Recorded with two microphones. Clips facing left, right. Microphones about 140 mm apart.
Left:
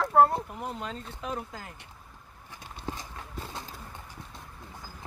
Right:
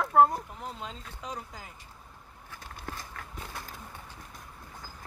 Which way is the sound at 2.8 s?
20° left (ahead or behind).